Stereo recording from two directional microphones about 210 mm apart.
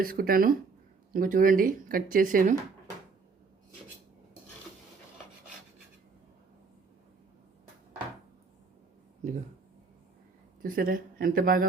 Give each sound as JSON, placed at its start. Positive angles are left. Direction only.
{"t": 0.0, "sound": "speech", "side_deg": -45}
{"t": 10.6, "sound": "speech", "side_deg": -45}